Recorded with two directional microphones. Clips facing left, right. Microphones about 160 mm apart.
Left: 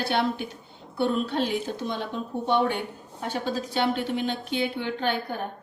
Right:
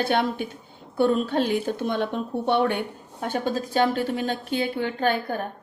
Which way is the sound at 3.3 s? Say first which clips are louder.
Right 3 dB; 45° right (ahead or behind).